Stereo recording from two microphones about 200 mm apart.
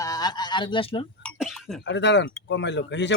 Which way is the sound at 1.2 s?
Centre (ahead or behind).